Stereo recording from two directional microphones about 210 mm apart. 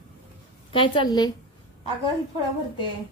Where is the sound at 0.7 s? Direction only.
20° left (ahead or behind).